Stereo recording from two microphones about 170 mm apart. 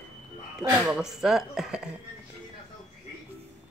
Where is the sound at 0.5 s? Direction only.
5° right (ahead or behind).